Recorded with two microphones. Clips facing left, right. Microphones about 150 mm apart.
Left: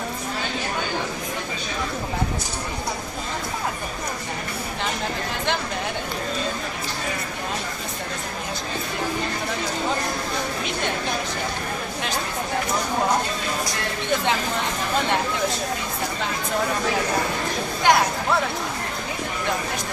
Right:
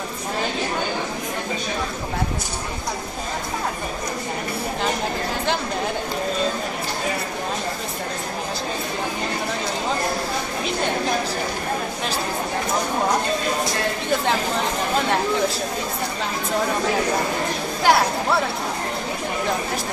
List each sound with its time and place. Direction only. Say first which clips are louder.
17.8 s speech: right 1 dB; 5° right (ahead or behind)